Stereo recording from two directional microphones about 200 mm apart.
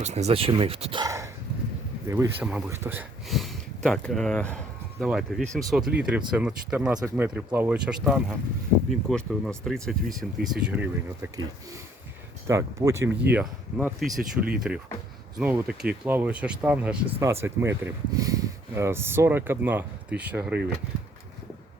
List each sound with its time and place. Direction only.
0.0 s speech: 35° right (ahead or behind); by 11.3 s 10° right (ahead or behind)
12.5 s speech: 15° right (ahead or behind)